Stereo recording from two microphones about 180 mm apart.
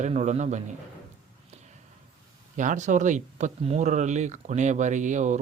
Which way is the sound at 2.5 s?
45° right (ahead or behind).